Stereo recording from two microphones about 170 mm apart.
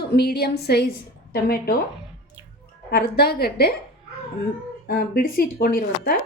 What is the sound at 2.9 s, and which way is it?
Speech, 70° left (ahead or behind).